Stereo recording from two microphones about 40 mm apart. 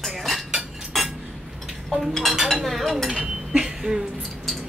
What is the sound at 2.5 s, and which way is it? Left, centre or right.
Speech, centre.